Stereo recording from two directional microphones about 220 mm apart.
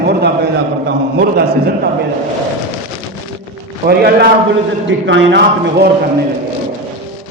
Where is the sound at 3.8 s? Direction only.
45° right (ahead or behind).